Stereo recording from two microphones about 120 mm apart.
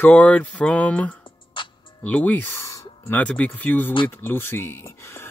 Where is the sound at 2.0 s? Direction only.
10° left (ahead or behind).